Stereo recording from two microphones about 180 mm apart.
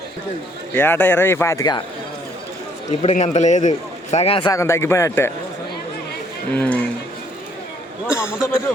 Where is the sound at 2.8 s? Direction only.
40° left (ahead or behind).